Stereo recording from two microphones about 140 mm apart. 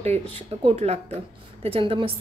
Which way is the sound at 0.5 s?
45° right (ahead or behind).